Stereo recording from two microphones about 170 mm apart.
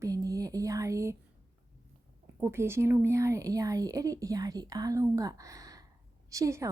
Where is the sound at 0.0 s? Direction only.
20° right (ahead or behind).